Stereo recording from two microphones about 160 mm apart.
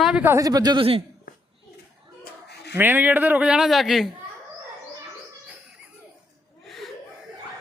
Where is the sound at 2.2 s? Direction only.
90° left.